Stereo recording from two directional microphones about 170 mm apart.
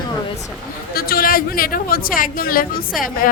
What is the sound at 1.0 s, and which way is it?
A woman's voice, 60° left (ahead or behind).